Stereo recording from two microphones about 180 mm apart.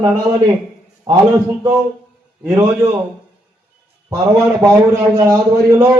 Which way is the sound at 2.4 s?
15° right (ahead or behind).